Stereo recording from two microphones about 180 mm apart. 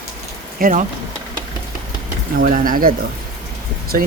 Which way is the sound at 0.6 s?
50° right (ahead or behind).